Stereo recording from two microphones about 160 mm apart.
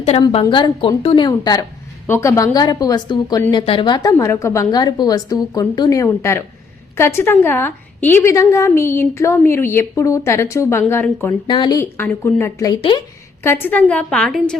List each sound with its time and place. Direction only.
0.2 s a woman's voice: 40° left (ahead or behind); by 11.3 s 15° left (ahead or behind)
11.4 s a woman's voice: 30° left (ahead or behind)
11.8 s a woman's voice: 15° left (ahead or behind)